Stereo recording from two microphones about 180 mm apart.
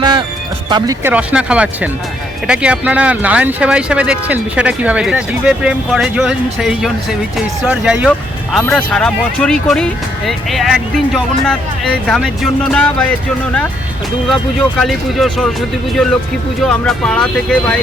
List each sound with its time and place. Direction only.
0.0 s music: 25° right (ahead or behind)
1.0 s speech: 5° right (ahead or behind)
14.8 s speech: centre (ahead or behind)
16.6 s speech: 5° left (ahead or behind)